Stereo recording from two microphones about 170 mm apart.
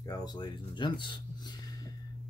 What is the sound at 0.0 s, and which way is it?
Speech, 20° left (ahead or behind).